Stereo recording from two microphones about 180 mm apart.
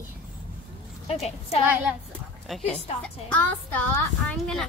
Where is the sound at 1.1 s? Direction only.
35° left (ahead or behind).